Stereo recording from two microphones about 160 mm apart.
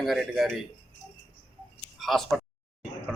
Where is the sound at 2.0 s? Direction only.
Centre (ahead or behind).